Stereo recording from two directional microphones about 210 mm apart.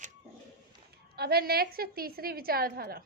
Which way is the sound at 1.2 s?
45° right (ahead or behind).